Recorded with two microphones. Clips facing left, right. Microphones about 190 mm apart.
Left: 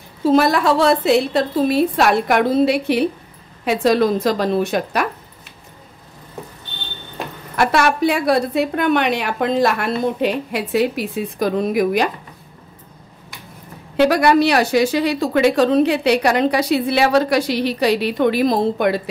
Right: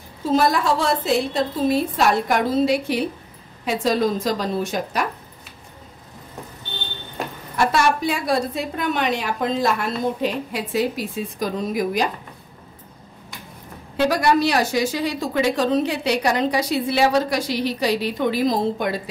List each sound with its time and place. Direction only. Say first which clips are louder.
0.2 s a woman's voice: left 4 dB; 70° left (ahead or behind)
7.5 s a woman's voice: left 2 dB; 65° left (ahead or behind)
13.9 s a woman's voice: left 5 dB; 70° left (ahead or behind)